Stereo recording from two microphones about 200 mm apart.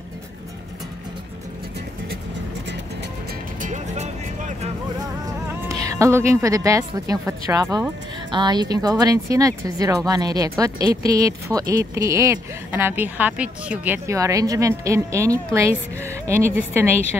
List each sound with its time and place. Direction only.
3.6 s music: 35° right (ahead or behind)
5.7 s speech: 15° right (ahead or behind)